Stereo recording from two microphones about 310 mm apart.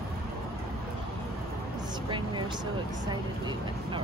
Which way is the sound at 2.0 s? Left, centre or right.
Centre.